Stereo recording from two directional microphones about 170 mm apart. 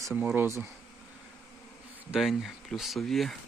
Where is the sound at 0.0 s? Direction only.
10° right (ahead or behind).